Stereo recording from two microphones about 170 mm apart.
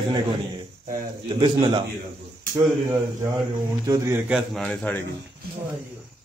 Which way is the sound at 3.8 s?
20° right (ahead or behind).